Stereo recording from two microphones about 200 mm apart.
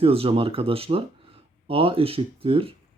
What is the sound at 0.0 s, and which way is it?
Speech, 30° right (ahead or behind).